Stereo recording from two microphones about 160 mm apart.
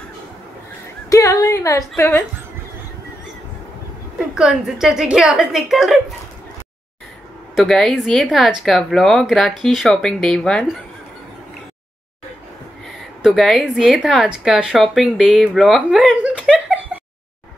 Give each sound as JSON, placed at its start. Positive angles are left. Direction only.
{"t": 1.1, "sound": "music", "side_deg": 20}
{"t": 4.4, "sound": "speech", "side_deg": -5}
{"t": 7.5, "sound": "speech", "side_deg": 0}
{"t": 13.2, "sound": "speech", "side_deg": 0}